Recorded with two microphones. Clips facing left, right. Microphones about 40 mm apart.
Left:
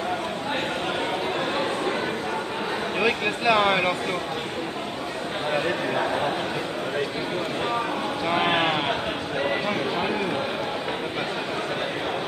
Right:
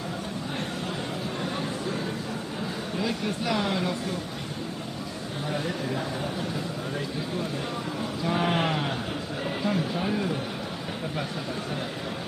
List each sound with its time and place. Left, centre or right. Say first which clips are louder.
3.0 s speech: left 5 dB; left
5.5 s speech: left 5 dB; left
8.3 s speech: left 3 dB; left